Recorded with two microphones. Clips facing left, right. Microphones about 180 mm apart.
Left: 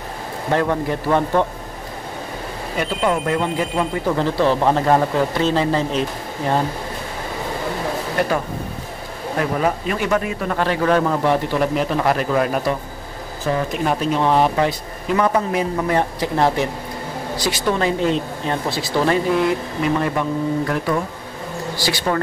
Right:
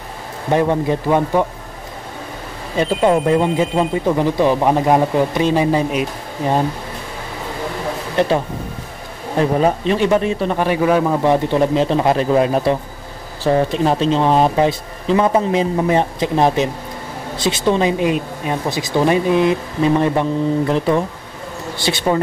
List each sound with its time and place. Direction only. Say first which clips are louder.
0.5 s speech: right 4 dB; 15° right (ahead or behind)
2.8 s speech: right 6 dB; 25° right (ahead or behind)
9.4 s speech: right 5 dB; 30° right (ahead or behind)
10.6 s speech: right 1 dB; 10° right (ahead or behind)